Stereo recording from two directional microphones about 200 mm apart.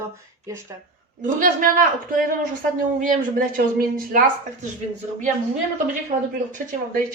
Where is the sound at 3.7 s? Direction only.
45° right (ahead or behind).